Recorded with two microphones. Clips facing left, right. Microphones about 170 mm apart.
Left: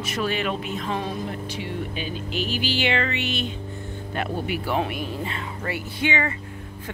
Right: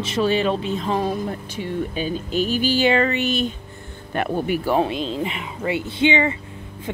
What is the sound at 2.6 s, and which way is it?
Music, 40° right (ahead or behind).